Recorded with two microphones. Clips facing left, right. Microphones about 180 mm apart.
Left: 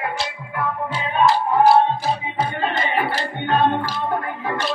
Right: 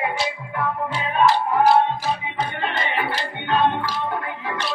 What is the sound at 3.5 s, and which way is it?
Music, 50° left (ahead or behind).